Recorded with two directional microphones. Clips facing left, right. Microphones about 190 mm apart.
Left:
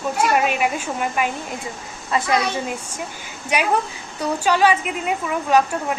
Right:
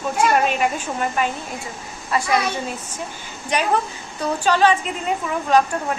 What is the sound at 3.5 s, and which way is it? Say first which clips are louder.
A woman's voice: even; 10° left (ahead or behind).